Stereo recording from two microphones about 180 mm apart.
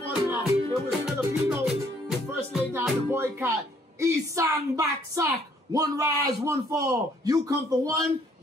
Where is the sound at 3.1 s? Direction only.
15° right (ahead or behind).